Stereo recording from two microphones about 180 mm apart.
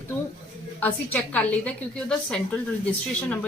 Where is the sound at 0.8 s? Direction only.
10° left (ahead or behind).